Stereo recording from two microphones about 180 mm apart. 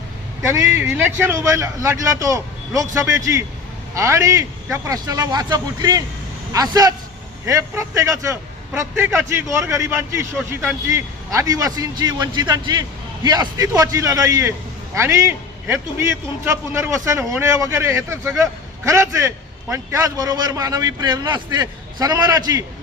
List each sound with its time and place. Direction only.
0.4 s a man's voice: 10° right (ahead or behind)